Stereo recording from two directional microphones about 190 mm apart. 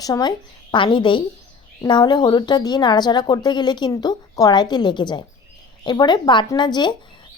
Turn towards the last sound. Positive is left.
turn(degrees=25)  # may be behind; listen again after turning